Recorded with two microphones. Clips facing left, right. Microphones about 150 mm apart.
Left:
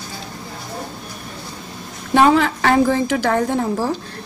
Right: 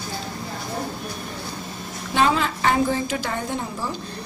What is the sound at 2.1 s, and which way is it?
A woman's voice, 65° left (ahead or behind).